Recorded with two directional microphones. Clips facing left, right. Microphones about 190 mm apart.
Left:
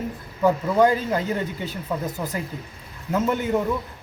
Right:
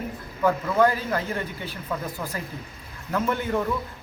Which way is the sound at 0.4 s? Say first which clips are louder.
Left 3 dB; 20° left (ahead or behind).